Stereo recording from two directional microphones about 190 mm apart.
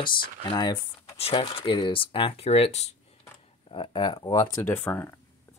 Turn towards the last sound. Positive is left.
turn(degrees=10)  # may be behind; listen again after turning